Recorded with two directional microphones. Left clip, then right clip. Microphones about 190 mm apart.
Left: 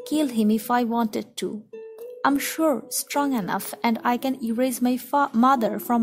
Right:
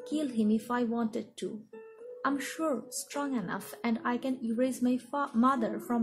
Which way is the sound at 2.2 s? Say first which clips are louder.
Left 10 dB; 60° left (ahead or behind).